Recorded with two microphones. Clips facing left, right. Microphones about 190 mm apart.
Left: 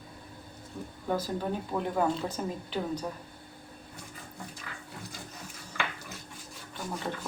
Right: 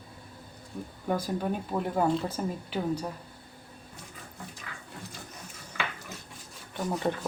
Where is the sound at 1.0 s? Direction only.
10° right (ahead or behind).